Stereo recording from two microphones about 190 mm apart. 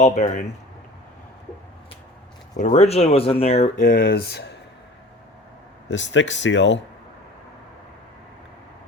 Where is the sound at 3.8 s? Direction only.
55° left (ahead or behind).